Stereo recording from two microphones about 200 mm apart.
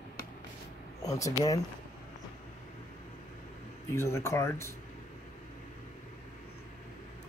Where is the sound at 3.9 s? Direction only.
15° left (ahead or behind).